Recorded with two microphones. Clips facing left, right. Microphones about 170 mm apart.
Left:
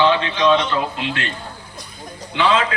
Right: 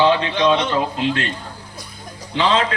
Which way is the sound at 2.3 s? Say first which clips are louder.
Even; 35° right (ahead or behind).